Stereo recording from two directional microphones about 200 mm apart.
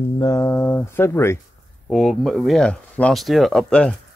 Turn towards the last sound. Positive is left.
turn(degrees=5)  # may be behind; listen again after turning